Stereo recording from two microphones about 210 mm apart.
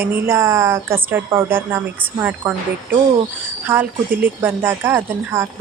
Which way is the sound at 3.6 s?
10° right (ahead or behind).